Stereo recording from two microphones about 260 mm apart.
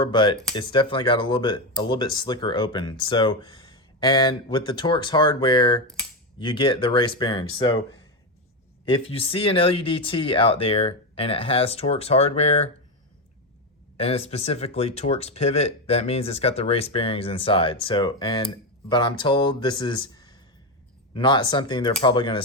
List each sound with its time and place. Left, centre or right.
0.0 s speech: centre
8.9 s speech: left
13.9 s speech: left